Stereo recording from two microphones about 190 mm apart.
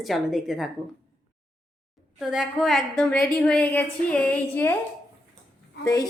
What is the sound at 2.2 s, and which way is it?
A woman's voice, centre (ahead or behind).